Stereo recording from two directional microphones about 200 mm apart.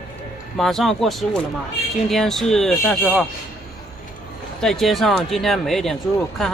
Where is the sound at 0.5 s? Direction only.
Centre (ahead or behind).